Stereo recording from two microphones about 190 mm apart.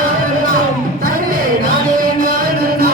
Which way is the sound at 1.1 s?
50° right (ahead or behind).